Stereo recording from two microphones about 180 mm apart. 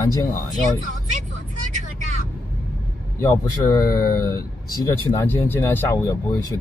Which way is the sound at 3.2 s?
20° left (ahead or behind).